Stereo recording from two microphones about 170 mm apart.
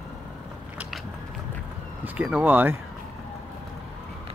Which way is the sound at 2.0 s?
10° right (ahead or behind).